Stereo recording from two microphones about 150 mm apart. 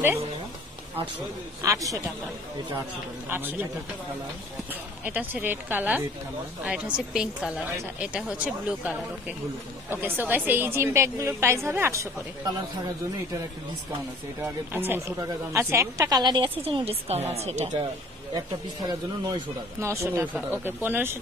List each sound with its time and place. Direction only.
1.6 s speech: 20° right (ahead or behind)
3.3 s speech: 15° right (ahead or behind)
5.0 s a woman's voice: 15° right (ahead or behind)
14.4 s speech: 15° right (ahead or behind); by 17.8 s 45° right (ahead or behind)
18.3 s speech: 25° right (ahead or behind)